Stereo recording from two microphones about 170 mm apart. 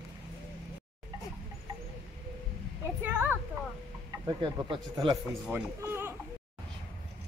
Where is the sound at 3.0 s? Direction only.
10° right (ahead or behind).